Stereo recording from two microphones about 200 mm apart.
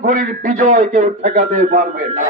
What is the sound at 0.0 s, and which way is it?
A man's voice, 40° right (ahead or behind).